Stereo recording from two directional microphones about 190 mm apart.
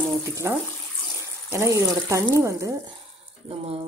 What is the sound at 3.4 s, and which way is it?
Speech, 30° right (ahead or behind).